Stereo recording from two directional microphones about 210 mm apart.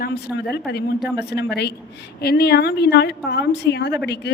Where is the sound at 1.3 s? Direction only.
50° left (ahead or behind).